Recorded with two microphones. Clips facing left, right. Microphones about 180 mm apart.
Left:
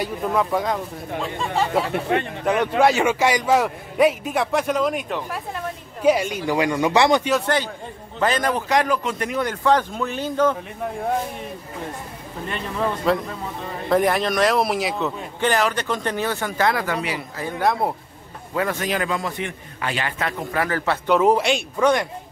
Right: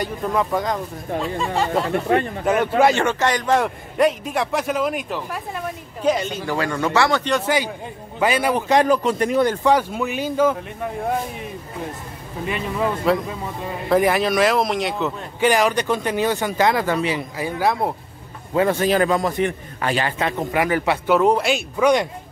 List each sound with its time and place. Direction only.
0.0 s a man's voice: centre (ahead or behind)
6.0 s speech: 10° left (ahead or behind)
7.4 s speech: 10° right (ahead or behind)
8.6 s a man's voice: 30° right (ahead or behind)
9.6 s speech: 10° right (ahead or behind)
12.4 s a man's voice: 5° right (ahead or behind)
15.5 s speech: 15° right (ahead or behind)
17.4 s a man's voice: centre (ahead or behind)
18.5 s a man's voice: 25° right (ahead or behind)
20.1 s speech: 20° right (ahead or behind)
21.1 s a man's voice: centre (ahead or behind)